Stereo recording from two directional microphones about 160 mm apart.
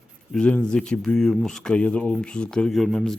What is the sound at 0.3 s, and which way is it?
Speech, 5° left (ahead or behind).